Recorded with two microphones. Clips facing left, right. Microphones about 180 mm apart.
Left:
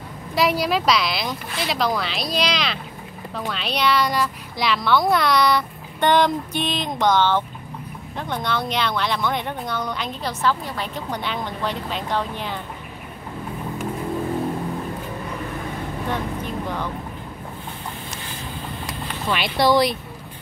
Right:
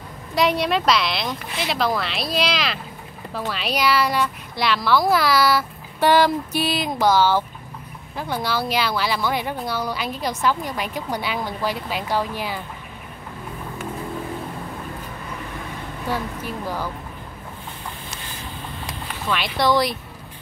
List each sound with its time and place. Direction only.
0.3 s a child's voice: centre (ahead or behind)
16.1 s speech: 5° right (ahead or behind)
19.2 s a child's voice: 5° left (ahead or behind)